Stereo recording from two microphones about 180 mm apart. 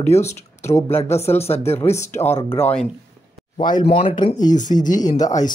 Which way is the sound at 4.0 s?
30° left (ahead or behind).